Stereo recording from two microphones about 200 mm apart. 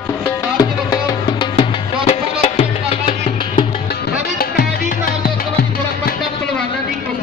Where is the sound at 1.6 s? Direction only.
30° left (ahead or behind).